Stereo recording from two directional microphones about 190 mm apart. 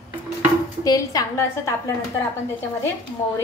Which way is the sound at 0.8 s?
20° left (ahead or behind).